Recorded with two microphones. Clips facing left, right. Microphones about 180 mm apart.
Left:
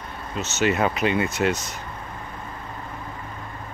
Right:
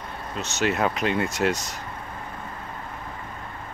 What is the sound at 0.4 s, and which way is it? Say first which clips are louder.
Speech: left 2 dB; centre (ahead or behind).